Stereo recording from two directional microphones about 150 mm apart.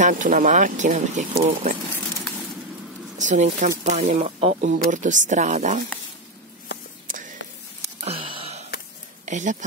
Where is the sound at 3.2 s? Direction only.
55° right (ahead or behind).